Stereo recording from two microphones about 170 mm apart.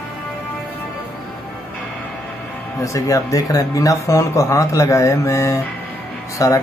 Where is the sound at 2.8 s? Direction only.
20° left (ahead or behind).